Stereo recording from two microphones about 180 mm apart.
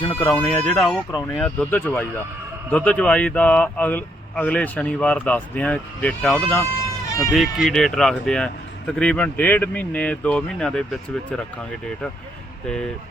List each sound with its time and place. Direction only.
0.0 s speech: 30° left (ahead or behind)
0.3 s speech: 5° left (ahead or behind)